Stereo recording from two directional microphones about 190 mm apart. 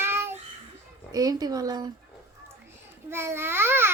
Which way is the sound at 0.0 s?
10° right (ahead or behind).